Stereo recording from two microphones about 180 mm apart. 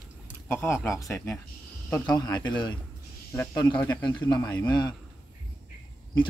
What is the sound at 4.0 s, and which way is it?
Speech, 25° left (ahead or behind).